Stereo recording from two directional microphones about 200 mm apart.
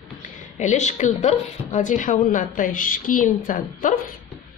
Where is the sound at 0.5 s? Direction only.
35° left (ahead or behind).